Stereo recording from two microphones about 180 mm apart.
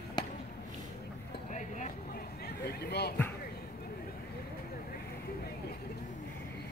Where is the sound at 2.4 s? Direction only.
60° left (ahead or behind).